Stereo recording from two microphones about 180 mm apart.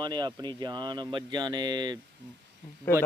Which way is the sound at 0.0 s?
25° right (ahead or behind).